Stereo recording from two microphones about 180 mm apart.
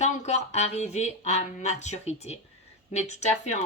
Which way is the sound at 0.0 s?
40° left (ahead or behind).